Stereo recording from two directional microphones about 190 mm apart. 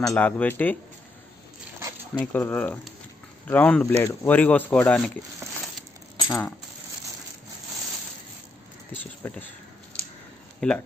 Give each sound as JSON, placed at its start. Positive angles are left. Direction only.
{"t": 0.1, "sound": "speech", "side_deg": 10}
{"t": 2.3, "sound": "speech", "side_deg": 10}
{"t": 6.1, "sound": "coin", "side_deg": 25}
{"t": 9.2, "sound": "speech", "side_deg": 10}
{"t": 10.6, "sound": "speech", "side_deg": 5}